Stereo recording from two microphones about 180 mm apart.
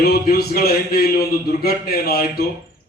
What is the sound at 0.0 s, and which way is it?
A man's voice, 60° left (ahead or behind).